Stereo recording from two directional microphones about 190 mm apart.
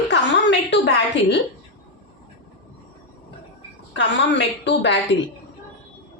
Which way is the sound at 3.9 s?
70° left (ahead or behind).